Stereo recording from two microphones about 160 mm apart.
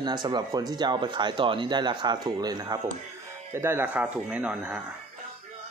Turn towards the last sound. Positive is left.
turn(degrees=-10)  # may be behind; listen again after turning